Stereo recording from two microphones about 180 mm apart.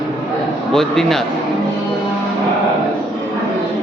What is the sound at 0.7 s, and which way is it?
Speech, centre (ahead or behind).